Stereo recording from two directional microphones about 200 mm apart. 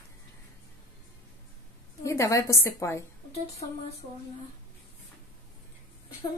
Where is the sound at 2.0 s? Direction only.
15° left (ahead or behind).